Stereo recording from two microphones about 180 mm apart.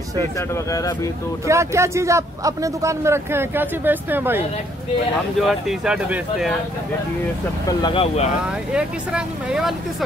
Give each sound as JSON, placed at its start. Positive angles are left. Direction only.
{"t": 0.7, "sound": "speech", "side_deg": 20}
{"t": 1.5, "sound": "a man's voice", "side_deg": -15}
{"t": 5.5, "sound": "speech", "side_deg": -5}
{"t": 7.6, "sound": "speech", "side_deg": 25}
{"t": 8.7, "sound": "speech", "side_deg": -5}